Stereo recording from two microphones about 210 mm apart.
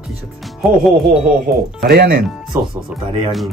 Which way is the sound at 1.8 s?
50° right (ahead or behind).